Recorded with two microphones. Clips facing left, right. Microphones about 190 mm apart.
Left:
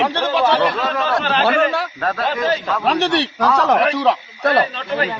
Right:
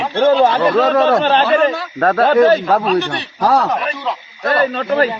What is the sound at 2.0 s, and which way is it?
Speech, 45° right (ahead or behind).